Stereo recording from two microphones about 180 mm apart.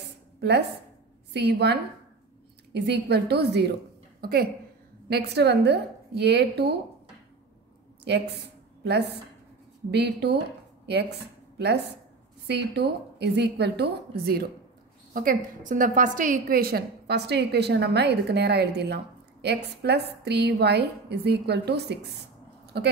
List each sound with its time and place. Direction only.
0.4 s a woman's voice: 70° right (ahead or behind)
9.8 s a woman's voice: 70° right (ahead or behind)
15.1 s a woman's voice: 50° right (ahead or behind); by 22.9 s 65° right (ahead or behind)